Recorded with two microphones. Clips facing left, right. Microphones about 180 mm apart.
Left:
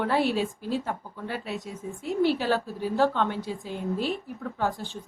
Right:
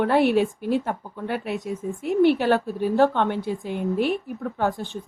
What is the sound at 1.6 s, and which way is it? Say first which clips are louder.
Speech: right 8 dB; centre (ahead or behind).